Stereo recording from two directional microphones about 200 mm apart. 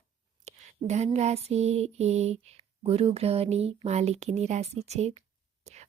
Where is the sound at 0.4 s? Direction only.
35° right (ahead or behind).